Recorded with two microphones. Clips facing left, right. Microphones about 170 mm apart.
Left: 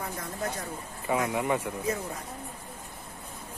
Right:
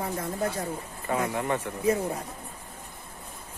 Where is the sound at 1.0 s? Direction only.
10° left (ahead or behind).